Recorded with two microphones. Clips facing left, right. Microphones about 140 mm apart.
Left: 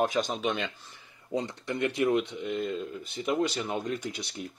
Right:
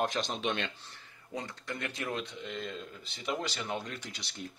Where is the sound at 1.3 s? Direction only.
25° left (ahead or behind).